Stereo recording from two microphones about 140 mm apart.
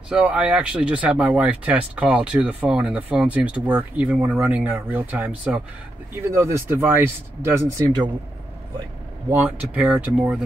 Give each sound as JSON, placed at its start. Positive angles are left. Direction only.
{"t": 0.1, "sound": "speech", "side_deg": -10}
{"t": 9.3, "sound": "speech", "side_deg": -10}